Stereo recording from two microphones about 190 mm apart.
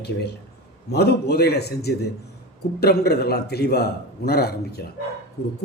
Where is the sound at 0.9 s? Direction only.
60° left (ahead or behind).